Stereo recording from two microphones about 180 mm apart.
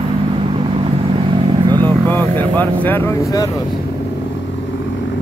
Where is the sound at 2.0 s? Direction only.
10° left (ahead or behind).